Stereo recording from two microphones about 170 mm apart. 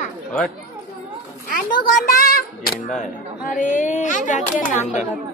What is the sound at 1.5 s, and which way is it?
A child's voice, 55° left (ahead or behind).